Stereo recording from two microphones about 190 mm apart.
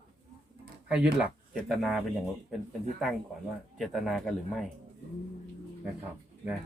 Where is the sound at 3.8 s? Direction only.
Centre (ahead or behind).